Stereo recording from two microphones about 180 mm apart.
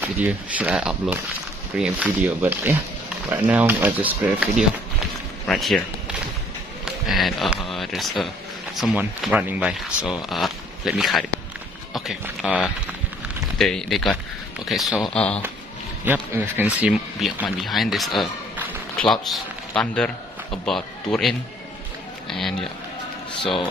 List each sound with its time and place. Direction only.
0.0 s speech: 10° right (ahead or behind)
6.8 s speech: centre (ahead or behind)
16.1 s a man's voice: 10° right (ahead or behind)
23.4 s speech: 30° left (ahead or behind)